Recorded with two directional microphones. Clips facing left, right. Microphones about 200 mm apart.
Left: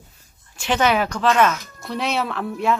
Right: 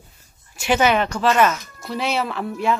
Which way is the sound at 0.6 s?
10° right (ahead or behind).